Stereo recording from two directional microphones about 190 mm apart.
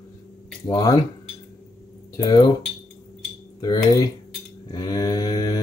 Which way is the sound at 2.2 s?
20° left (ahead or behind).